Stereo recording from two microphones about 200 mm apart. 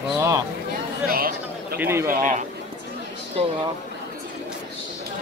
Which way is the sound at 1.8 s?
15° right (ahead or behind).